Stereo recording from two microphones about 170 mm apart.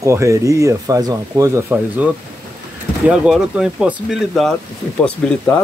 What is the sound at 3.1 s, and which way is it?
Speech, 5° right (ahead or behind).